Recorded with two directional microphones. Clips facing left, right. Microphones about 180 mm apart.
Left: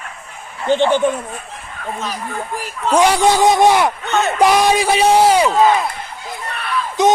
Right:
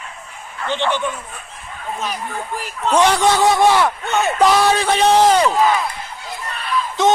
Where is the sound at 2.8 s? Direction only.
10° left (ahead or behind).